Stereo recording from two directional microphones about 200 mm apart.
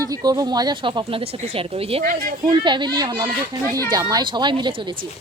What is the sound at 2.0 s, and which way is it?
Speech, 40° right (ahead or behind).